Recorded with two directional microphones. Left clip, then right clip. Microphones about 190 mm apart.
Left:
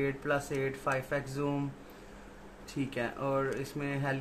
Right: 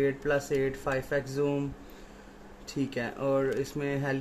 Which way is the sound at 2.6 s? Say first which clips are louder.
Right 2 dB; 40° right (ahead or behind).